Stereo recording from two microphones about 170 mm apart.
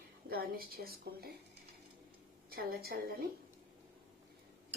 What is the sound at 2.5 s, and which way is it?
Speech, 60° right (ahead or behind).